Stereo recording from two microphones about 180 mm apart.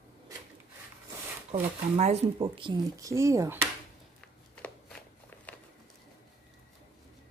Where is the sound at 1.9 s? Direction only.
35° right (ahead or behind); by 3.7 s 15° right (ahead or behind).